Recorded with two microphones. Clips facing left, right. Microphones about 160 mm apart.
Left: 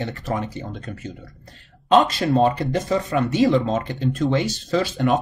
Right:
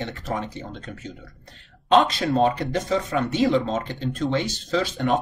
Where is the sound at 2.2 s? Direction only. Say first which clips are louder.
Left 3 dB; 30° left (ahead or behind).